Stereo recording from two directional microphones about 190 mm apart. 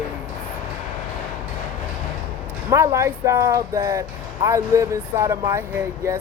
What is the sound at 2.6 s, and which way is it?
Speech, 15° right (ahead or behind).